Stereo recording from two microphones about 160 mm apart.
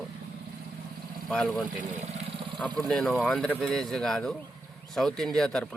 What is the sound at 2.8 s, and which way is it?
Speech, 5° left (ahead or behind).